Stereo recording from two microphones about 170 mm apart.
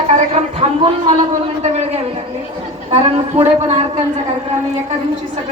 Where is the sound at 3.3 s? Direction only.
40° right (ahead or behind).